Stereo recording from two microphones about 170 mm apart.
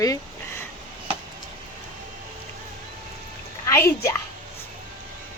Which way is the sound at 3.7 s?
15° left (ahead or behind).